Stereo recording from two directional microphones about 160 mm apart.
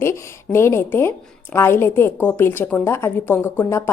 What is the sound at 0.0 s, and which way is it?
A woman's voice, 15° left (ahead or behind).